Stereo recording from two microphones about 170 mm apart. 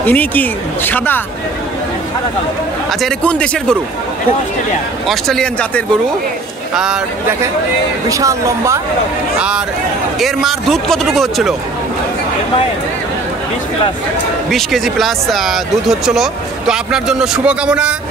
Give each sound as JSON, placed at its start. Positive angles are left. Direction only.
{"t": 0.0, "sound": "speech", "side_deg": 10}
{"t": 2.9, "sound": "speech", "side_deg": 0}
{"t": 5.0, "sound": "speech", "side_deg": 0}
{"t": 6.7, "sound": "speech", "side_deg": -5}
{"t": 8.1, "sound": "a woman's voice", "side_deg": -20}
{"t": 10.1, "sound": "speech", "side_deg": 0}
{"t": 14.5, "sound": "speech", "side_deg": 0}